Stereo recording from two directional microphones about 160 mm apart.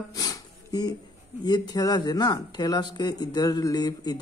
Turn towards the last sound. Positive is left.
turn(degrees=25)  # may be behind; listen again after turning